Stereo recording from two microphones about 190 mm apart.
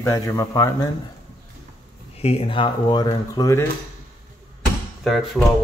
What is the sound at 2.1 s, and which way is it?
Speech, 30° left (ahead or behind).